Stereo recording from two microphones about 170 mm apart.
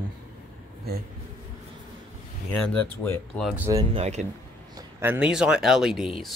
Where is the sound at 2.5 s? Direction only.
5° left (ahead or behind).